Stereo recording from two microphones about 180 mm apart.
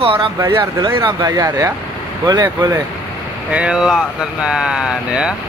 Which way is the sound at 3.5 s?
5° right (ahead or behind).